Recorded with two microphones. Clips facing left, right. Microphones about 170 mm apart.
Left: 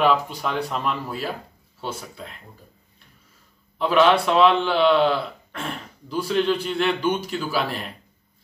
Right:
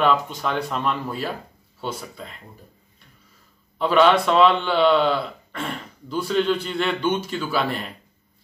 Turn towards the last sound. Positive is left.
turn(degrees=0)  # may be behind; listen again after turning